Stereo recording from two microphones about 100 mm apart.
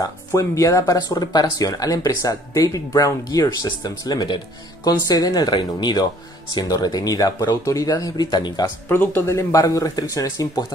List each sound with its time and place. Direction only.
0.0 s speech: 30° left (ahead or behind)
8.8 s speech: 20° left (ahead or behind)